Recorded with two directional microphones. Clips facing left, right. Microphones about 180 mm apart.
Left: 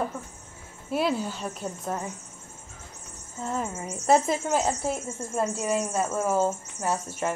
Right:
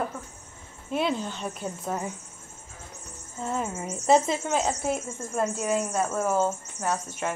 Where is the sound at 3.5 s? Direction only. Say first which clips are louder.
Right 1 dB; centre (ahead or behind).